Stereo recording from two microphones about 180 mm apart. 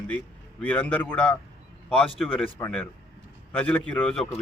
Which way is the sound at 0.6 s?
5° left (ahead or behind).